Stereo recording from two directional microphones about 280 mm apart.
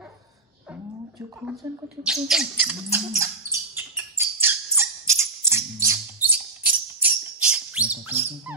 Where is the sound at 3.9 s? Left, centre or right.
Centre.